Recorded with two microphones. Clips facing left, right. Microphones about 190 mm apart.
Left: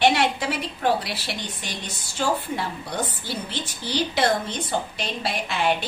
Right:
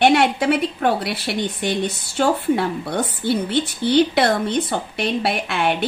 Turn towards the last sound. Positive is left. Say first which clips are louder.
# right 3 dB
turn(degrees=-60)  # may be behind; listen again after turning